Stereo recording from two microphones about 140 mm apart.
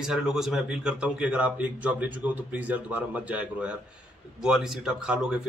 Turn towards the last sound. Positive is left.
turn(degrees=-5)  # may be behind; listen again after turning